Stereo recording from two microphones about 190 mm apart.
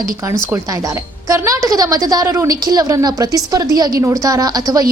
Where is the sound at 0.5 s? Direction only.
20° right (ahead or behind).